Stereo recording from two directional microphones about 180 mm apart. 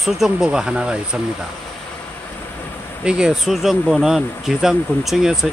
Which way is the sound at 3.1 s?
5° right (ahead or behind).